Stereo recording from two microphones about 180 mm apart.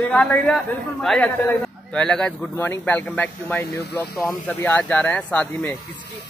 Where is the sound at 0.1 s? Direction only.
5° left (ahead or behind).